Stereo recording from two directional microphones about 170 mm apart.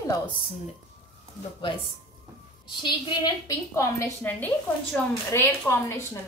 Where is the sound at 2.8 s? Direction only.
25° left (ahead or behind).